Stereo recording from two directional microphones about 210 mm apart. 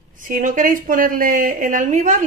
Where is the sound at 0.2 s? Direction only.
40° right (ahead or behind).